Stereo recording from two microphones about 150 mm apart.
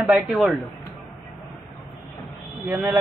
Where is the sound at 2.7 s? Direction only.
15° right (ahead or behind).